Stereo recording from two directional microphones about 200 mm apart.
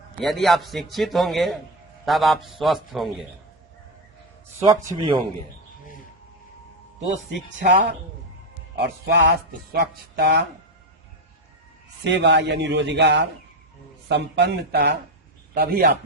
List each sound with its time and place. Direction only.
0.2 s a man's voice: centre (ahead or behind)
4.6 s speech: 15° right (ahead or behind)
7.4 s speech: 60° right (ahead or behind)
12.0 s a man's voice: 60° right (ahead or behind)